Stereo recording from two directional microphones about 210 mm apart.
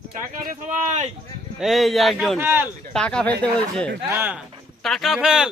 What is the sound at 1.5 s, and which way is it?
Speech, centre (ahead or behind).